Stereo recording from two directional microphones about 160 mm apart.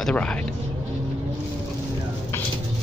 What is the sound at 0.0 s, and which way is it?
Speech, 5° left (ahead or behind).